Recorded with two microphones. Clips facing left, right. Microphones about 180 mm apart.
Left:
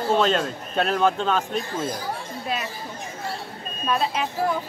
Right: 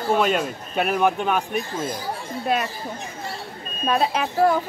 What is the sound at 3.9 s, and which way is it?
Speech, 55° right (ahead or behind).